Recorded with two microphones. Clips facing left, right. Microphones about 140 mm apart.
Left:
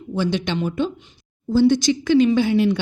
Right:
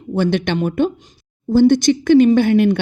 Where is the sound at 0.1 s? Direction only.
55° right (ahead or behind).